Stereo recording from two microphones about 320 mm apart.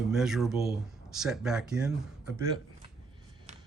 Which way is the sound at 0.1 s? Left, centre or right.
Centre.